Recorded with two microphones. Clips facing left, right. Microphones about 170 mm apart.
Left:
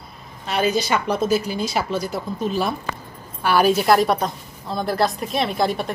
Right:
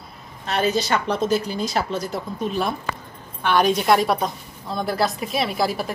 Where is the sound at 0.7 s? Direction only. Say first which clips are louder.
Left 1 dB; 15° left (ahead or behind).